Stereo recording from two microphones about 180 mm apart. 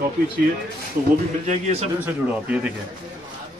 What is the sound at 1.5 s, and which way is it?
Speech, 35° right (ahead or behind).